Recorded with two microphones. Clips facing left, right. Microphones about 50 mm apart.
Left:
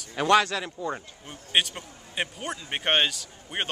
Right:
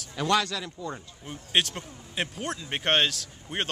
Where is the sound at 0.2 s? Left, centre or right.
Left.